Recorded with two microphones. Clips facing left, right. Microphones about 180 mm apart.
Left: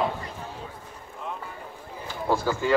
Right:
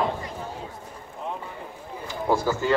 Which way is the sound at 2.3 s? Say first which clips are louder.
Right 2 dB; 15° right (ahead or behind).